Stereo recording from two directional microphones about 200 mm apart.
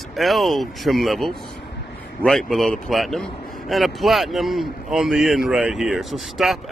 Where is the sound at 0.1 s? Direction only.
Centre (ahead or behind).